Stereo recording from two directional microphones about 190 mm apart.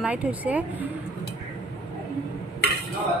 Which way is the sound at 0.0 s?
5° right (ahead or behind).